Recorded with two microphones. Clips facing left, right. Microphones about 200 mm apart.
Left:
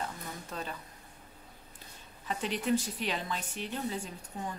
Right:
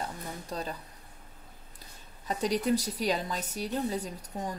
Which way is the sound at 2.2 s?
40° right (ahead or behind).